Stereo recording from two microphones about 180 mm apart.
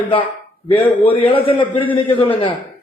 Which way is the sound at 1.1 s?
35° left (ahead or behind).